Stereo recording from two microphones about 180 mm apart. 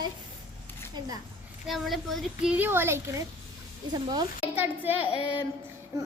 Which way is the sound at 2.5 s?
10° right (ahead or behind).